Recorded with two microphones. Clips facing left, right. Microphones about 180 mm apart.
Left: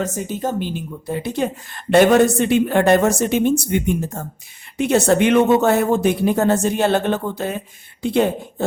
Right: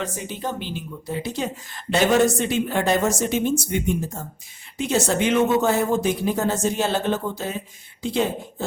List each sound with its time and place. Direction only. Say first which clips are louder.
0.0 s speech: left 6 dB; 45° left (ahead or behind)